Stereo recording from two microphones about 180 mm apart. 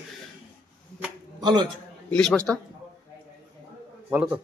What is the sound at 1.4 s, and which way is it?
Speech, 25° right (ahead or behind).